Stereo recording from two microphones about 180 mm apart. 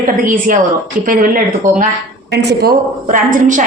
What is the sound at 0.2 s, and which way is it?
A woman's voice, 50° right (ahead or behind).